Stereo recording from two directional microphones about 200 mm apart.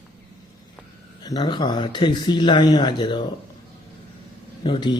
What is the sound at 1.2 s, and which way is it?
Speech, 20° left (ahead or behind).